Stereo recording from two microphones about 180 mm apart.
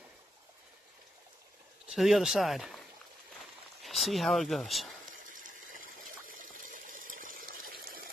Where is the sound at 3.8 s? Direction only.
Centre (ahead or behind).